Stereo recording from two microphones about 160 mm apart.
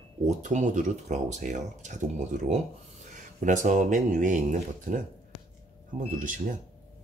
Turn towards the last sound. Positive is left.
turn(degrees=-55)  # may be behind; listen again after turning